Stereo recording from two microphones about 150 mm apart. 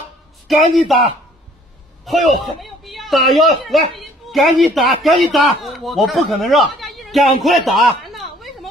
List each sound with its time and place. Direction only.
0.5 s a man's voice: centre (ahead or behind)
2.0 s a man's voice: centre (ahead or behind)